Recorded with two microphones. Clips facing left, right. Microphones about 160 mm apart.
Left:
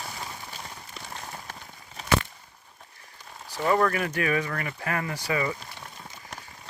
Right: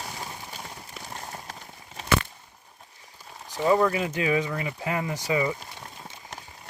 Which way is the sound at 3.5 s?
15° right (ahead or behind).